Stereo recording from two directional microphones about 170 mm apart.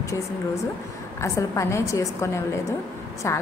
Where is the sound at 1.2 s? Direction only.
15° left (ahead or behind).